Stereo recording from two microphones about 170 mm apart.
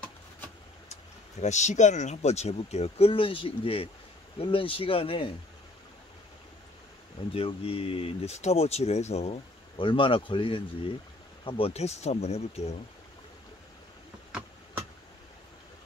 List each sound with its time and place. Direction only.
1.4 s speech: 45° left (ahead or behind)
7.3 s speech: 35° left (ahead or behind)